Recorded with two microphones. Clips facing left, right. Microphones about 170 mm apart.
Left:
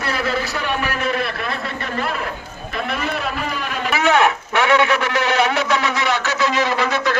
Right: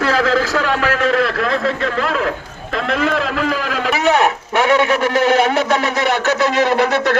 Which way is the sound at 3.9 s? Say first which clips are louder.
Right 1 dB; 35° right (ahead or behind).